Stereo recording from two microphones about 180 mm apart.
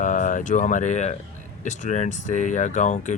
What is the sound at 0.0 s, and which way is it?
Speech, 45° left (ahead or behind).